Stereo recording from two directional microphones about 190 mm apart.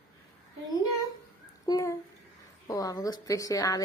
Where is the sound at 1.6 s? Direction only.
15° left (ahead or behind).